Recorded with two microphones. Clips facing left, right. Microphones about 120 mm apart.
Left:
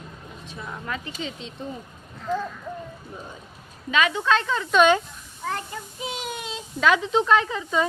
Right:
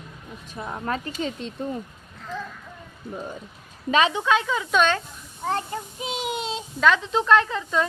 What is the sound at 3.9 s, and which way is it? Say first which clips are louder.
Speech: right 2 dB; 30° right (ahead or behind).